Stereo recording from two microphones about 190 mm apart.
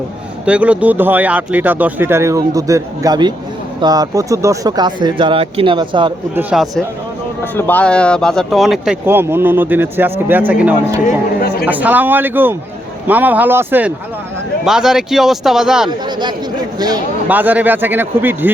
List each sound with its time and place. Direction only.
0.4 s speech: 5° right (ahead or behind); by 6.1 s 25° right (ahead or behind)
6.3 s a man's voice: 5° right (ahead or behind)
7.5 s a man's voice: 10° left (ahead or behind)
15.9 s speech: 25° right (ahead or behind)
17.2 s speech: 10° right (ahead or behind)